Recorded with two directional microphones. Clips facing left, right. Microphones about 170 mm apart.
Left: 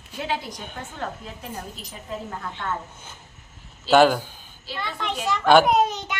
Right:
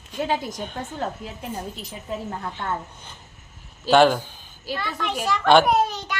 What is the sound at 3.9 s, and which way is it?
Speech, 5° left (ahead or behind).